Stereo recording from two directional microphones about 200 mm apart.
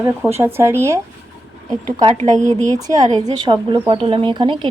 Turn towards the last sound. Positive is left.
turn(degrees=-25)  # may be behind; listen again after turning